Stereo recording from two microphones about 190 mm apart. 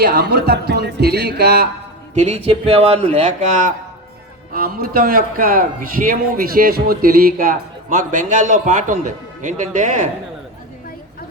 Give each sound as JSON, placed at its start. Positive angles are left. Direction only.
{"t": 0.0, "sound": "speech", "side_deg": -60}
{"t": 2.1, "sound": "a man's voice", "side_deg": -35}
{"t": 4.5, "sound": "a man's voice", "side_deg": -50}